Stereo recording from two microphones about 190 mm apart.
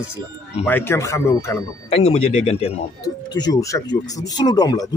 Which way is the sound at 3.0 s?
20° left (ahead or behind).